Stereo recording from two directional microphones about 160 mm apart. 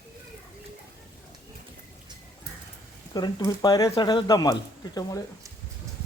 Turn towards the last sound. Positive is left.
turn(degrees=25)  # may be behind; listen again after turning